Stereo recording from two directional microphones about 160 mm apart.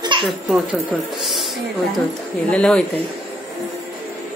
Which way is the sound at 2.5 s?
5° left (ahead or behind).